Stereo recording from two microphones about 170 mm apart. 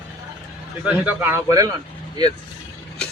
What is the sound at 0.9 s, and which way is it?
Speech, 10° right (ahead or behind).